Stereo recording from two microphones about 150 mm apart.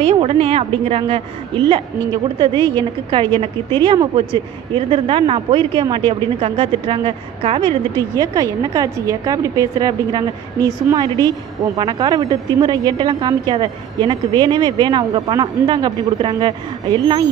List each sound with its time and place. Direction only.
0.0 s speech: 40° right (ahead or behind)
8.6 s speech: 25° right (ahead or behind)